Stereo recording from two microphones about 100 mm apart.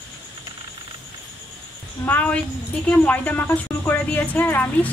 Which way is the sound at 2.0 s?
15° left (ahead or behind).